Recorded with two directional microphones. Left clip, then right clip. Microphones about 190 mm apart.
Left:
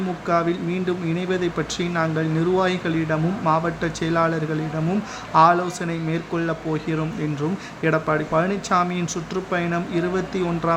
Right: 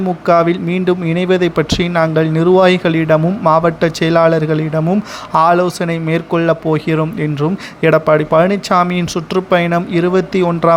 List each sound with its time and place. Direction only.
0.3 s speech: 40° right (ahead or behind)